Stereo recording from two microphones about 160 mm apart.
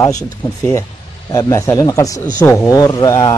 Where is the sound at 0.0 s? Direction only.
20° left (ahead or behind).